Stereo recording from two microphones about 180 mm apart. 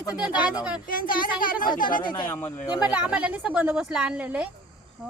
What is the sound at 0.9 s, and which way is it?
Speech, 50° left (ahead or behind).